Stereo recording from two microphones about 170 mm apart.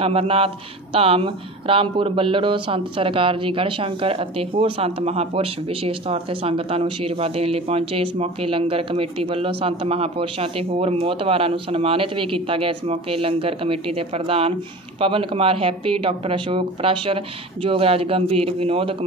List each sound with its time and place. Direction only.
0.0 s speech: 35° right (ahead or behind)